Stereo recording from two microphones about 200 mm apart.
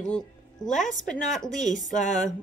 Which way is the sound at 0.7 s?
40° left (ahead or behind).